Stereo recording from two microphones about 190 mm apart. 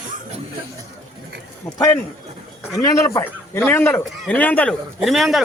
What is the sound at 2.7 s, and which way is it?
A man's voice, 20° left (ahead or behind).